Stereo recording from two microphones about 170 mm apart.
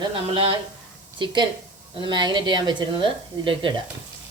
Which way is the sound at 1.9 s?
30° right (ahead or behind).